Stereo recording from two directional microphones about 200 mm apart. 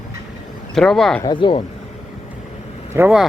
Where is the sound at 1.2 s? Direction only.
25° left (ahead or behind).